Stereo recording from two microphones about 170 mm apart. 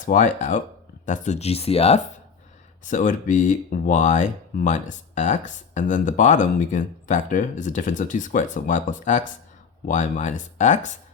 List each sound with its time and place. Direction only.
0.0 s speech: 50° left (ahead or behind)
2.8 s speech: 50° left (ahead or behind)